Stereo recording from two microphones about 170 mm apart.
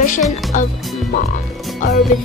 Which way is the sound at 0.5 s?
50° left (ahead or behind).